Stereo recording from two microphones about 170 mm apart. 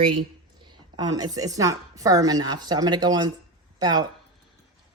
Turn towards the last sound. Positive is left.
turn(degrees=-25)  # may be behind; listen again after turning